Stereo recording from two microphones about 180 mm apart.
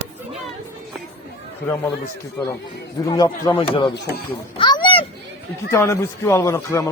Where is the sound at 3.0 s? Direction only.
20° left (ahead or behind).